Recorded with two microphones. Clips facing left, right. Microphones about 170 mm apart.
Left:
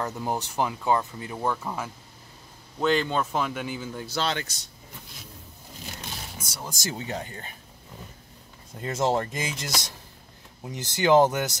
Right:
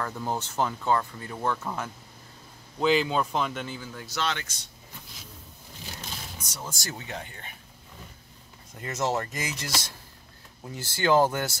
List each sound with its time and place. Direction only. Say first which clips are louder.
0.0 s speech: left 2 dB; 15° left (ahead or behind)
2.8 s speech: even; 5° right (ahead or behind); by 4.5 s 35° left (ahead or behind)
6.3 s speech: left 1 dB; 10° left (ahead or behind)
7.1 s speech: left 5 dB; 35° left (ahead or behind)
8.8 s speech: left 3 dB; 30° left (ahead or behind)